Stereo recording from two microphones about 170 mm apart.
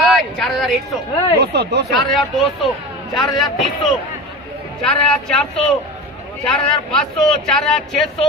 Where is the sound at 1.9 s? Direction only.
Centre (ahead or behind).